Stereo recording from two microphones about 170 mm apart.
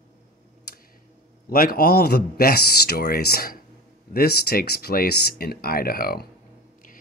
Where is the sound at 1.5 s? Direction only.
60° left (ahead or behind).